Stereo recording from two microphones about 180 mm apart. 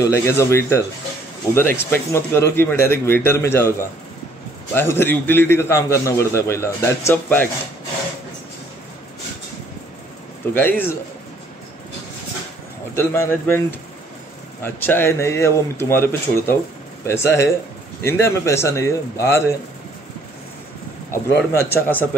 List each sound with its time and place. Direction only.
0.0 s speech: 15° left (ahead or behind)
4.7 s speech: 10° left (ahead or behind)
10.5 s speech: 10° left (ahead or behind)
12.9 s speech: 15° left (ahead or behind)
14.6 s speech: 10° left (ahead or behind)
21.1 s speech: 15° left (ahead or behind)